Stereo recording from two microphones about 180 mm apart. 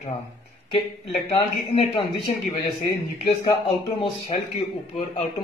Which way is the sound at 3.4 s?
30° left (ahead or behind).